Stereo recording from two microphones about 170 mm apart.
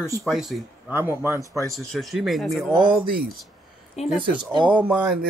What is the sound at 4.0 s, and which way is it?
Speech, 40° left (ahead or behind).